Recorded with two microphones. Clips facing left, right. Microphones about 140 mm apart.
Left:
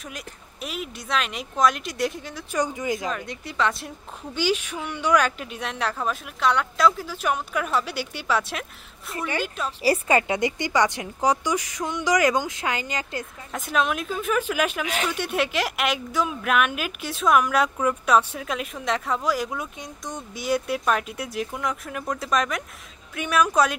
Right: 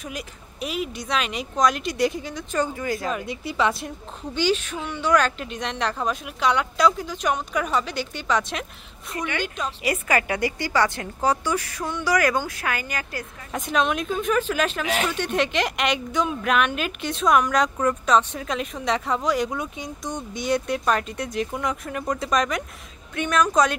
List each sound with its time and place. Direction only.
0.0 s a woman's voice: centre (ahead or behind)
2.5 s speech: 15° left (ahead or behind)
3.1 s speech: 5° right (ahead or behind)
4.4 s a woman's voice: 10° left (ahead or behind)
9.8 s a woman's voice: 25° left (ahead or behind)
13.5 s a woman's voice: centre (ahead or behind)